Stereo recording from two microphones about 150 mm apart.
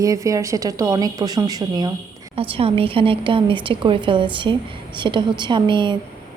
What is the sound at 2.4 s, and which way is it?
A woman's voice, 40° right (ahead or behind).